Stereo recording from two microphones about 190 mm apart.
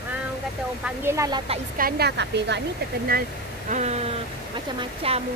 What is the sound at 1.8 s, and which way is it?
Speech, 55° right (ahead or behind).